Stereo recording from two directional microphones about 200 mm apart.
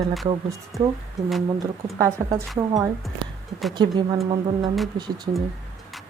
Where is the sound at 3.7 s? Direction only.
20° right (ahead or behind).